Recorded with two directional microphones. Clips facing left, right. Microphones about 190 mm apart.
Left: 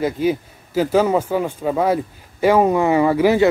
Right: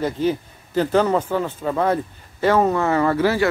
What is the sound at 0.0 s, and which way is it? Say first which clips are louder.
Speech: left 2 dB; 10° left (ahead or behind).